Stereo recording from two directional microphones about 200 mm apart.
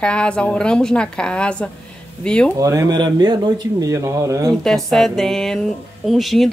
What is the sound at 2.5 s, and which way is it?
Speech, 15° right (ahead or behind).